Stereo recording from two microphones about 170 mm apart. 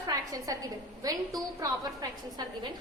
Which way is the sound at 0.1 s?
20° right (ahead or behind).